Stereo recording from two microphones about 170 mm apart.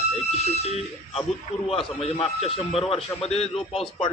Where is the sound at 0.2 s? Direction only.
40° left (ahead or behind).